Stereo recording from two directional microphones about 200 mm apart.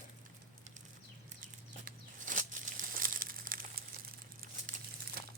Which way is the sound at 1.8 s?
40° right (ahead or behind).